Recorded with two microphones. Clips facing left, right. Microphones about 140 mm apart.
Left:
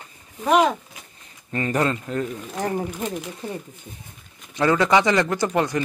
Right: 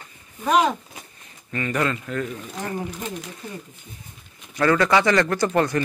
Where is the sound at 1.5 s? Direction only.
30° left (ahead or behind).